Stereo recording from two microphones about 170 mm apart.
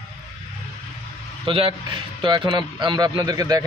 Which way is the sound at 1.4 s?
30° right (ahead or behind).